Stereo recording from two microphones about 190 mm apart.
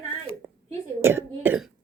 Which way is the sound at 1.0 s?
10° right (ahead or behind).